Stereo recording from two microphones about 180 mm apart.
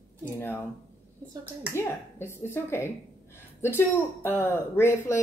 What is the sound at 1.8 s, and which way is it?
Speech, 15° left (ahead or behind).